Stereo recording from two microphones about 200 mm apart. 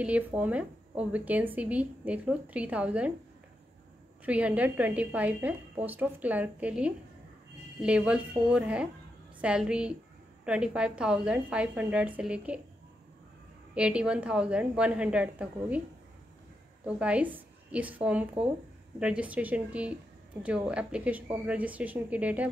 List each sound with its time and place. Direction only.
0.0 s speech: 10° right (ahead or behind)
4.3 s a woman's voice: 5° right (ahead or behind)
13.7 s a woman's voice: 5° right (ahead or behind)
16.8 s a woman's voice: 5° right (ahead or behind)